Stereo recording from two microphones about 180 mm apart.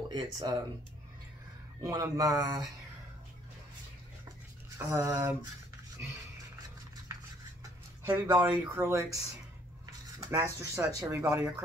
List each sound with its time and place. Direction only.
0.1 s speech: 20° right (ahead or behind)
1.8 s speech: 20° right (ahead or behind)
4.7 s speech: 15° right (ahead or behind)
8.0 s speech: 20° right (ahead or behind)